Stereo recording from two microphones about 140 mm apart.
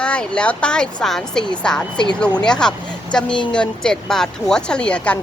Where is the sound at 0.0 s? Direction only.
5° left (ahead or behind).